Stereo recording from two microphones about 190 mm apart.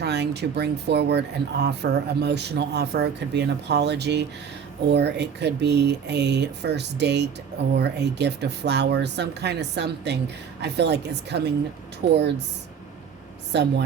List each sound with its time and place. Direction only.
0.0 s speech: 60° right (ahead or behind)
13.5 s speech: 65° right (ahead or behind)